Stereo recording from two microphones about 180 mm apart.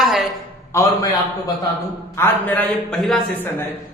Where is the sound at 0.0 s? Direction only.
Centre (ahead or behind).